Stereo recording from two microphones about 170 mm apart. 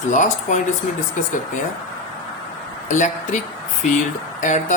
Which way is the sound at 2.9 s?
45° left (ahead or behind).